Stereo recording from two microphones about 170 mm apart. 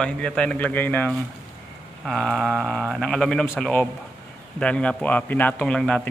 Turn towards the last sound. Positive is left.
turn(degrees=5)  # may be behind; listen again after turning